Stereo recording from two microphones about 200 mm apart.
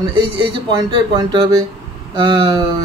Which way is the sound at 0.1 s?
25° right (ahead or behind).